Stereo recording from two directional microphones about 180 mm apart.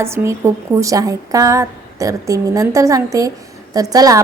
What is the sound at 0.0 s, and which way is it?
A woman's voice, 15° right (ahead or behind).